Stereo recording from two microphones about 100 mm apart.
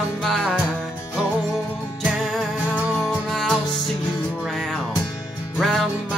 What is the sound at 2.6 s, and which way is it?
Music, 15° right (ahead or behind).